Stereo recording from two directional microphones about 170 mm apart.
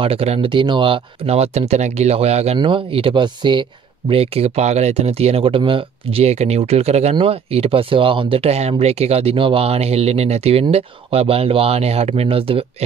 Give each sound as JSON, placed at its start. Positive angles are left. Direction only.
{"t": 0.0, "sound": "speech", "side_deg": -35}